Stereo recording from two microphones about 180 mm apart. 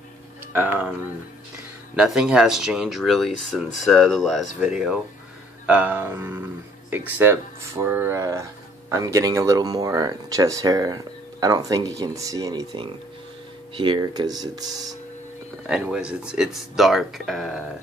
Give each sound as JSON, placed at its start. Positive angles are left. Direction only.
{"t": 0.5, "sound": "speech", "side_deg": -10}
{"t": 2.0, "sound": "speech", "side_deg": -5}
{"t": 15.6, "sound": "speech", "side_deg": -5}